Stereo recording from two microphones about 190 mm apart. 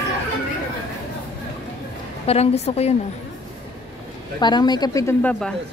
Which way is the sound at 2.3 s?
35° left (ahead or behind).